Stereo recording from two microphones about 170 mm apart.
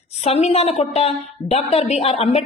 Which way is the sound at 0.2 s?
35° left (ahead or behind).